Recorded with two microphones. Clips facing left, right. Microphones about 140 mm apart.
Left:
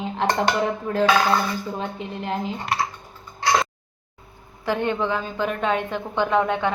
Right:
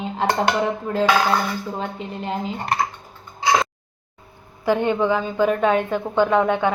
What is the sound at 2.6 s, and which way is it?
Speech, 50° right (ahead or behind).